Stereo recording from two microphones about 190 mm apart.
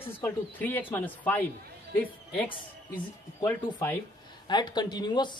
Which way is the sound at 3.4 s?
15° left (ahead or behind).